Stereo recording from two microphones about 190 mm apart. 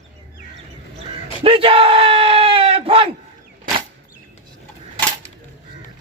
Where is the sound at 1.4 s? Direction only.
30° right (ahead or behind).